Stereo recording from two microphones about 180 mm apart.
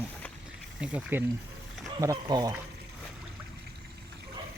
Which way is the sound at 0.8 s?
5° right (ahead or behind).